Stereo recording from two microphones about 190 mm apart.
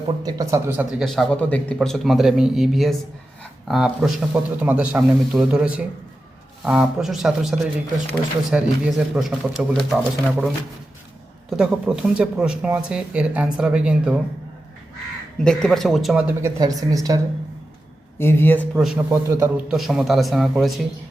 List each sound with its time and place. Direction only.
0.3 s speech: 20° right (ahead or behind); by 5.6 s centre (ahead or behind)
6.7 s speech: 5° right (ahead or behind)
11.5 s speech: 5° right (ahead or behind)
15.4 s speech: 5° left (ahead or behind)
16.6 s a woman's voice: 20° right (ahead or behind)
18.2 s speech: 10° left (ahead or behind)
18.9 s speech: 15° right (ahead or behind)